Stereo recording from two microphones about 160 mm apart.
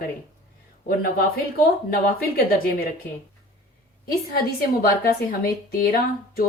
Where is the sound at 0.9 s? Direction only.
65° left (ahead or behind).